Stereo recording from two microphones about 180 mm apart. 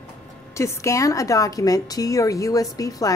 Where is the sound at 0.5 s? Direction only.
15° left (ahead or behind).